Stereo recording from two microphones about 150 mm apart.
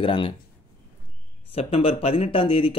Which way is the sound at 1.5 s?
40° left (ahead or behind).